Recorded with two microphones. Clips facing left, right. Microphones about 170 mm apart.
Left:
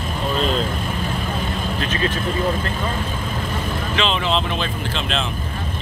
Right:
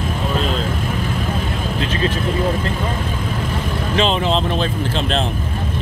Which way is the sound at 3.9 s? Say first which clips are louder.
Right 4 dB; 40° right (ahead or behind).